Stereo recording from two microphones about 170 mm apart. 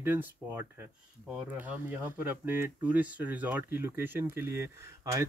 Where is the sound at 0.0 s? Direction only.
15° right (ahead or behind).